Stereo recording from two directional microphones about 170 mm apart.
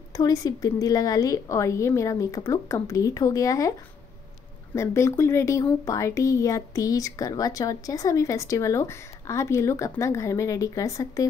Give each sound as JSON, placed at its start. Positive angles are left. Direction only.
{"t": 0.1, "sound": "speech", "side_deg": 20}
{"t": 4.7, "sound": "speech", "side_deg": 15}